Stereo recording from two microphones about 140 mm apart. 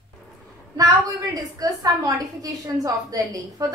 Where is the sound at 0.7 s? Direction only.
25° right (ahead or behind).